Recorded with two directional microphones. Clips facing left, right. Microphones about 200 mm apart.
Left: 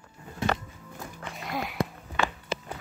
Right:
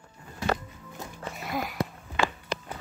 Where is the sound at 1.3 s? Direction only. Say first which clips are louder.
Right 1 dB; centre (ahead or behind).